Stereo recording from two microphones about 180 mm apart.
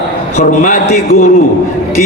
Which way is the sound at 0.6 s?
45° left (ahead or behind).